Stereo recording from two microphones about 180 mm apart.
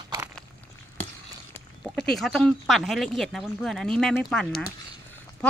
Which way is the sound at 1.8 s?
Centre (ahead or behind).